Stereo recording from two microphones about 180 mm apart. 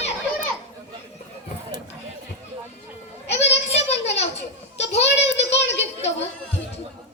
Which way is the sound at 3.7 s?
35° left (ahead or behind).